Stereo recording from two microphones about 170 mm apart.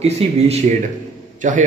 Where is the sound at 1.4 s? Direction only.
50° right (ahead or behind).